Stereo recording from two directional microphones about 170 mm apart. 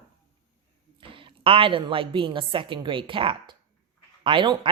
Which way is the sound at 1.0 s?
30° right (ahead or behind).